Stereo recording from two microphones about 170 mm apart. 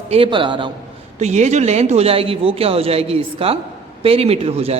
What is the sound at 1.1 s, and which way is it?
A woman's voice, 40° right (ahead or behind).